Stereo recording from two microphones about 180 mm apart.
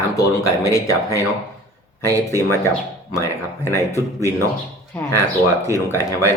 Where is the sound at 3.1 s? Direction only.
15° left (ahead or behind).